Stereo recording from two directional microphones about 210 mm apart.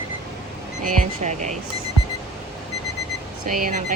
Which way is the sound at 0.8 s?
35° right (ahead or behind).